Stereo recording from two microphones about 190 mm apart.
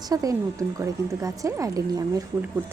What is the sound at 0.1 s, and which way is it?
A woman's voice, 20° right (ahead or behind).